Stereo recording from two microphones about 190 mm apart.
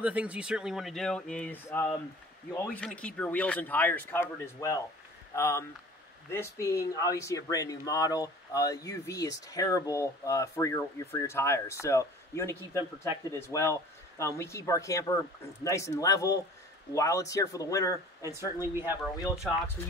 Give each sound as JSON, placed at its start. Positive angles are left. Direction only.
{"t": 0.0, "sound": "speech", "side_deg": -5}